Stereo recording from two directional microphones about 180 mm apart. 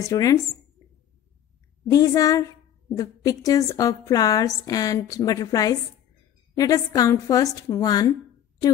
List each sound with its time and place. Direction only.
0.0 s a woman's voice: 20° left (ahead or behind)
1.9 s a woman's voice: 20° left (ahead or behind)